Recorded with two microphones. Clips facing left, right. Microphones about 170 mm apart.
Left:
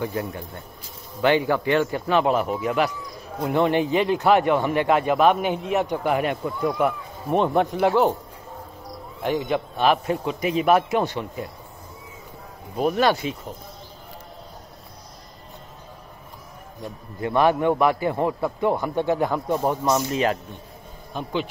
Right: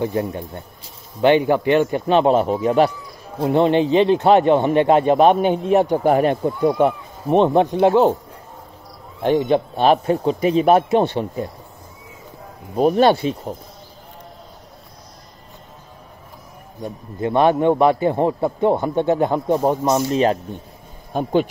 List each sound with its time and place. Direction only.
0.0 s speech: 25° right (ahead or behind)
9.2 s a man's voice: 30° right (ahead or behind)
12.7 s a man's voice: 35° right (ahead or behind)
17.2 s speech: 25° right (ahead or behind)
21.1 s speech: 50° right (ahead or behind)